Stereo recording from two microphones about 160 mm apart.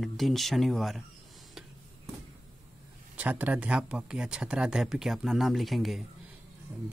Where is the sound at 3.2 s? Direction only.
10° right (ahead or behind).